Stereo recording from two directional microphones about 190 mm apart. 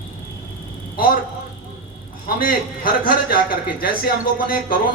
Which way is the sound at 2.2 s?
50° left (ahead or behind).